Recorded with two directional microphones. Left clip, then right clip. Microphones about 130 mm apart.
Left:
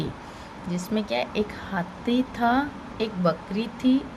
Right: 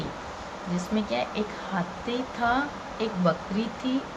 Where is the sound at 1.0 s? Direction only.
90° left.